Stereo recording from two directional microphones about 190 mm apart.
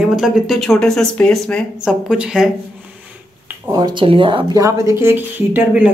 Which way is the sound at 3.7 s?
20° right (ahead or behind).